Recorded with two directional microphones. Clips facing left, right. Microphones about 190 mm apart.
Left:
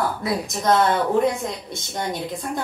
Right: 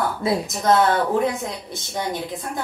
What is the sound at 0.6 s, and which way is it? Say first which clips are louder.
A woman's voice: right 1 dB; centre (ahead or behind).